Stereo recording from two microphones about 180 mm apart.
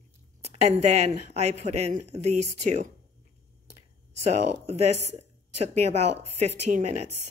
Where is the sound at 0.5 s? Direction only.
40° right (ahead or behind).